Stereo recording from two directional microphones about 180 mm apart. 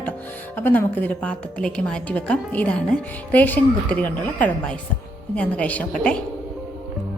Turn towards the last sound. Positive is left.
turn(degrees=5)  # may be behind; listen again after turning